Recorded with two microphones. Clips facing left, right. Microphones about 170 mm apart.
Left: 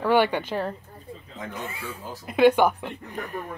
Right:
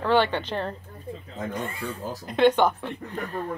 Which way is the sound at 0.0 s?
10° left (ahead or behind).